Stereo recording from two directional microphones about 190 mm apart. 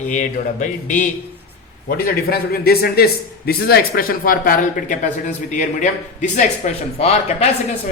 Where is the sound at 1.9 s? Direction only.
55° left (ahead or behind); by 6.8 s 40° left (ahead or behind).